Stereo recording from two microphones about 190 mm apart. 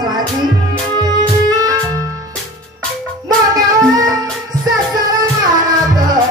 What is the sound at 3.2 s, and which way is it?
Music, 20° right (ahead or behind).